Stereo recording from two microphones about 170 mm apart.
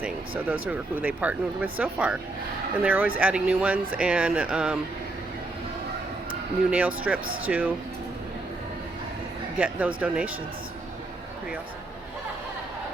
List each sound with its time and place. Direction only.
0.0 s speech: 10° right (ahead or behind)
6.7 s speech: 5° right (ahead or behind)
9.6 s speech: 10° right (ahead or behind)